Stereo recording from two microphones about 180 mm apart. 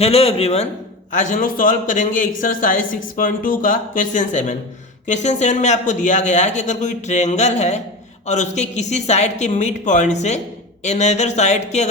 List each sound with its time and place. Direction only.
0.0 s speech: 35° left (ahead or behind)